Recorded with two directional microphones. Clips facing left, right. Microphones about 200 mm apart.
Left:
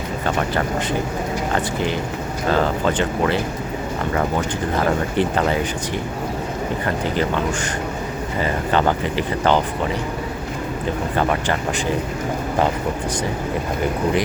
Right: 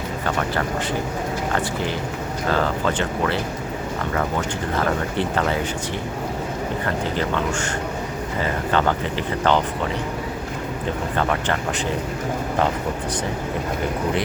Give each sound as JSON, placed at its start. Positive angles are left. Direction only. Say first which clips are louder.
{"t": 0.3, "sound": "speech", "louder": "left 2 dB", "side_deg": 20}
{"t": 2.5, "sound": "speech", "louder": "left 3 dB", "side_deg": 15}
{"t": 6.8, "sound": "speech", "louder": "left 3 dB", "side_deg": 15}
{"t": 11.2, "sound": "speech", "louder": "left 2 dB", "side_deg": 10}